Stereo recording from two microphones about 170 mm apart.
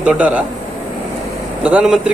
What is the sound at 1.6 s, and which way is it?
Speech, 5° right (ahead or behind).